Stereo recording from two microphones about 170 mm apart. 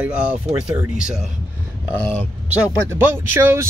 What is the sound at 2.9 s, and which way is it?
Speech, 15° right (ahead or behind).